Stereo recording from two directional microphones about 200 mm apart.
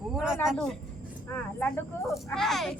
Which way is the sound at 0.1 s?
Centre (ahead or behind).